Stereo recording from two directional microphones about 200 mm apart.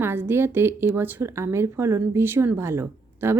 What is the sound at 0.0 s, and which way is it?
Speech, 10° right (ahead or behind).